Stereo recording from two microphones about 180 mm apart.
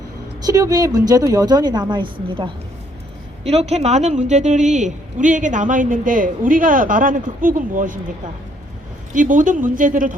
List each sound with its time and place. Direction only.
0.4 s a woman's voice: 20° right (ahead or behind)
3.4 s a woman's voice: 35° right (ahead or behind)
9.1 s a woman's voice: 45° right (ahead or behind)